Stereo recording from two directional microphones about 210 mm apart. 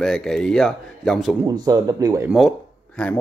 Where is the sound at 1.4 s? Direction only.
15° right (ahead or behind).